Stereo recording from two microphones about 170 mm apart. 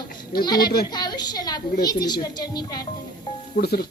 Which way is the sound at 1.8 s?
25° left (ahead or behind).